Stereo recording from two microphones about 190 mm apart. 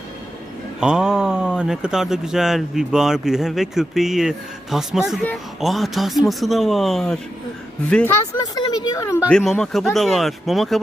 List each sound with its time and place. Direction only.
0.8 s speech: 5° right (ahead or behind)
8.4 s speech: 20° left (ahead or behind)
9.3 s speech: centre (ahead or behind)